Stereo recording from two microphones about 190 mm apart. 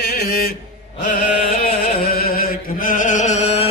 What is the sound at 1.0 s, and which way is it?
Music, 40° left (ahead or behind).